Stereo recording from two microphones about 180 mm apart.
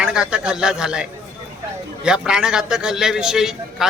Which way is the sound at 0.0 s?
5° right (ahead or behind).